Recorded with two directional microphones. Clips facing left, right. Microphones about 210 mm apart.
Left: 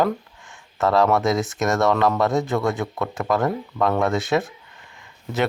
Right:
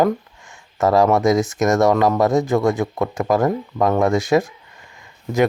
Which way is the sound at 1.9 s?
15° right (ahead or behind).